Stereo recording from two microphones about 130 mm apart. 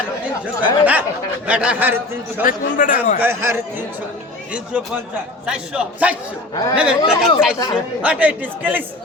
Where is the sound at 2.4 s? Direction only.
90° left.